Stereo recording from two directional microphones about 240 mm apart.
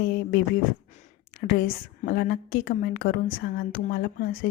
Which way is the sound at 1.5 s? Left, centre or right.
Left.